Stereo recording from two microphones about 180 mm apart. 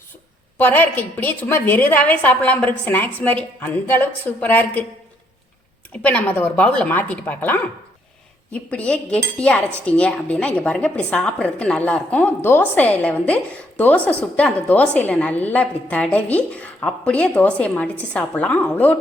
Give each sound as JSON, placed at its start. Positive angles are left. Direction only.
{"t": 0.6, "sound": "a woman's voice", "side_deg": 10}
{"t": 5.9, "sound": "a woman's voice", "side_deg": 10}
{"t": 8.7, "sound": "a woman's voice", "side_deg": 5}